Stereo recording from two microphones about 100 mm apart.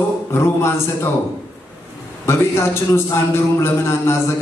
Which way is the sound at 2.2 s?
25° left (ahead or behind).